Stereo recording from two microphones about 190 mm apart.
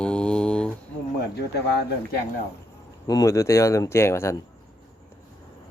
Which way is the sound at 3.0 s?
20° left (ahead or behind).